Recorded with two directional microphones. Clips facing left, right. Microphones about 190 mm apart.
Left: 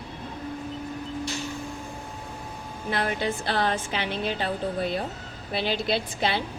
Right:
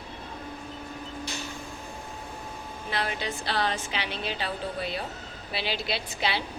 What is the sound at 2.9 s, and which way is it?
A woman's voice, 50° left (ahead or behind).